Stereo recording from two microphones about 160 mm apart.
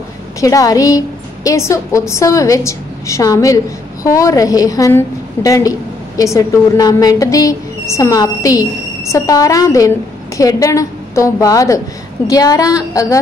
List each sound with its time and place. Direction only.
0.4 s a woman's voice: 20° left (ahead or behind)